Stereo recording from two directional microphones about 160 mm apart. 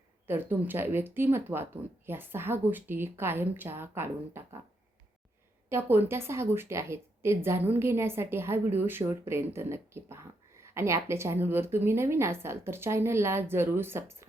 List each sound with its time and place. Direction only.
0.3 s speech: 10° right (ahead or behind)
5.6 s speech: 15° right (ahead or behind)